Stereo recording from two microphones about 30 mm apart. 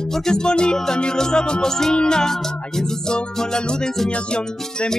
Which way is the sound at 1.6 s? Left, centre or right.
Centre.